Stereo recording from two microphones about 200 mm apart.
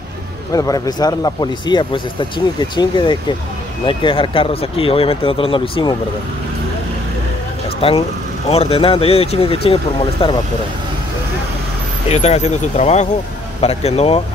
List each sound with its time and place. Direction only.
0.5 s speech: 20° left (ahead or behind)
7.8 s speech: 25° left (ahead or behind)
12.1 s speech: 35° left (ahead or behind)